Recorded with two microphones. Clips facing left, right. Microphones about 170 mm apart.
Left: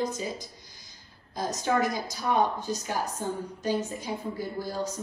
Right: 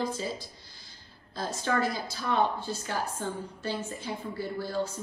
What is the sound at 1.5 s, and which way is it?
A woman's voice, 15° left (ahead or behind).